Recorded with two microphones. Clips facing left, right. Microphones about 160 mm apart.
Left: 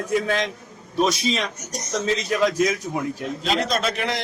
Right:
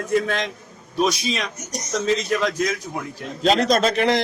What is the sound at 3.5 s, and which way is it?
Speech, 40° right (ahead or behind).